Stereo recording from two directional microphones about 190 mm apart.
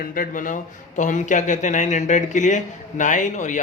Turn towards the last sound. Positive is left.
turn(degrees=40)  # may be behind; listen again after turning